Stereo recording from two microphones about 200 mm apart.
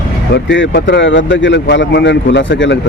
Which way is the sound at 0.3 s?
65° left (ahead or behind).